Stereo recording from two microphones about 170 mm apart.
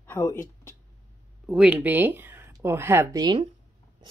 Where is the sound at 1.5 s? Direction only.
5° right (ahead or behind).